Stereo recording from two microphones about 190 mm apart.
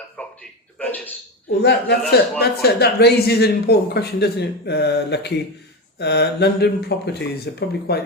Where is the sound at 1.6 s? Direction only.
60° left (ahead or behind).